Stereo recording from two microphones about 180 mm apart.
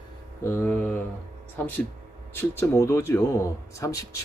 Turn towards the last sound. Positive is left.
turn(degrees=15)  # may be behind; listen again after turning